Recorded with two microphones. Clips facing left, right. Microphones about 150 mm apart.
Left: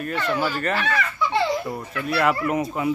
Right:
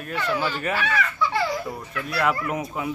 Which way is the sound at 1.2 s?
25° left (ahead or behind).